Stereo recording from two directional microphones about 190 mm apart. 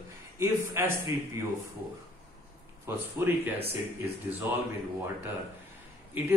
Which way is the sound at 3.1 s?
10° right (ahead or behind).